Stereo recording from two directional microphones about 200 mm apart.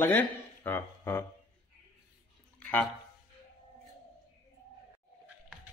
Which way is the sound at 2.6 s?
10° left (ahead or behind).